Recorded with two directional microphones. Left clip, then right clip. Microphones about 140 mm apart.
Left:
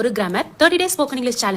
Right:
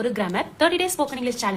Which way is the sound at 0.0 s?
40° left (ahead or behind).